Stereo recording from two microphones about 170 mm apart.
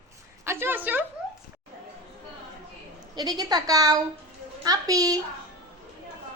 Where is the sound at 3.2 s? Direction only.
25° right (ahead or behind).